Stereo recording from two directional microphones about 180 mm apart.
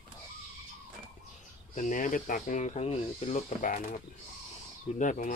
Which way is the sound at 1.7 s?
45° left (ahead or behind).